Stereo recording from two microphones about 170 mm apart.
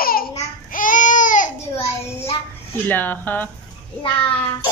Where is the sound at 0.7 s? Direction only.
50° left (ahead or behind).